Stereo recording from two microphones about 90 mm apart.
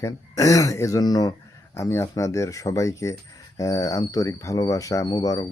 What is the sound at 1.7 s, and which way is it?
Speech, 30° left (ahead or behind).